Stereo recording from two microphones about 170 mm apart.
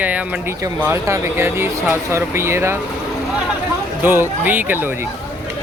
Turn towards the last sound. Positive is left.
turn(degrees=-10)  # may be behind; listen again after turning